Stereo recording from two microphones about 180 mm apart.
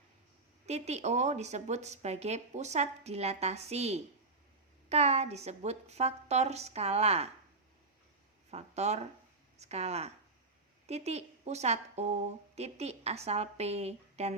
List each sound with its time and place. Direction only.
0.6 s a woman's voice: 40° right (ahead or behind)
8.4 s a woman's voice: 35° right (ahead or behind)